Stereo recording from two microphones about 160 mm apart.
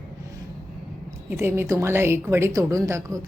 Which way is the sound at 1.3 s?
15° right (ahead or behind).